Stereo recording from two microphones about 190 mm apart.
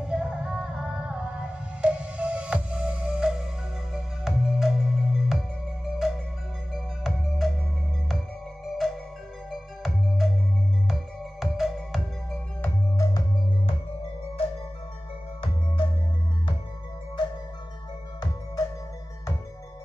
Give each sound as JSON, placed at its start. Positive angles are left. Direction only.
{"t": 0.0, "sound": "music", "side_deg": -5}
{"t": 8.6, "sound": "music", "side_deg": 0}
{"t": 12.9, "sound": "music", "side_deg": 15}